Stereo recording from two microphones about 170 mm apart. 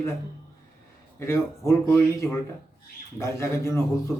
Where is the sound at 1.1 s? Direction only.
15° left (ahead or behind).